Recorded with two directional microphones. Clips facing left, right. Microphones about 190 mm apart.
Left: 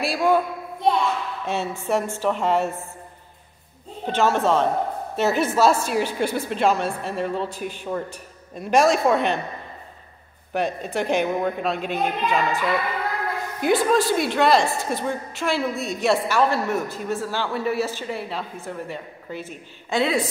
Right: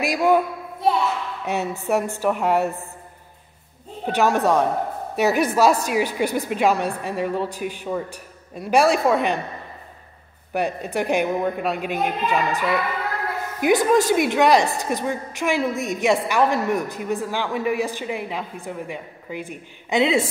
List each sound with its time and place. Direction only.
0.1 s a woman's voice: 15° right (ahead or behind)
0.8 s a sound: 5° right (ahead or behind)
1.4 s a woman's voice: 15° right (ahead or behind)
4.0 s a woman's voice: 15° right (ahead or behind)
10.5 s a woman's voice: 10° right (ahead or behind)